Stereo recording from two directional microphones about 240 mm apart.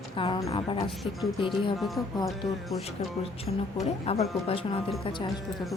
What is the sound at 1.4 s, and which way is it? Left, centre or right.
Speech, left.